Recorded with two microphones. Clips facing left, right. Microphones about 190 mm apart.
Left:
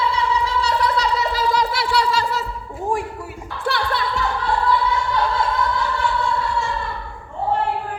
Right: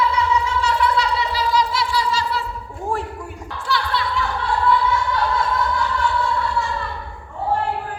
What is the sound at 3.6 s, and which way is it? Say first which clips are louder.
Music: left 1 dB; 50° left (ahead or behind).